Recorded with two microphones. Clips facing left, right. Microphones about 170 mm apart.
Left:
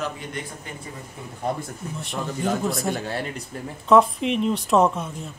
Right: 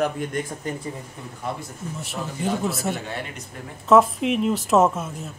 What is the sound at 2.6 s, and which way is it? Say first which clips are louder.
A woman's voice: left 1 dB; centre (ahead or behind).